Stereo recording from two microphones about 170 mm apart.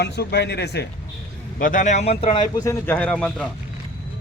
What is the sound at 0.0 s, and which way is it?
Speech, 75° left (ahead or behind).